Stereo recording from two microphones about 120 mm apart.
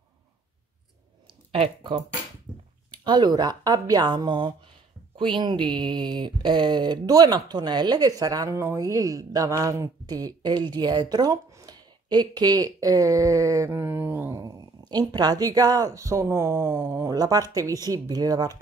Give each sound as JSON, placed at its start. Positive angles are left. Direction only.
{"t": 2.9, "sound": "speech", "side_deg": -40}
{"t": 14.4, "sound": "speech", "side_deg": -30}